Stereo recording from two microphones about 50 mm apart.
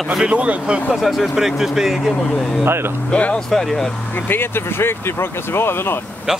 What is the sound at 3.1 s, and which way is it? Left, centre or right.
Speech, left.